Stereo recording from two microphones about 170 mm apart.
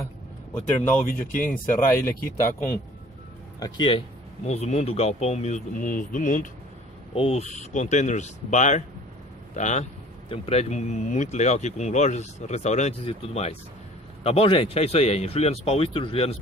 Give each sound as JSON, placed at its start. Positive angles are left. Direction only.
{"t": 1.0, "sound": "speech", "side_deg": 55}
{"t": 1.7, "sound": "speech", "side_deg": 10}
{"t": 4.5, "sound": "speech", "side_deg": 40}
{"t": 7.2, "sound": "speech", "side_deg": 35}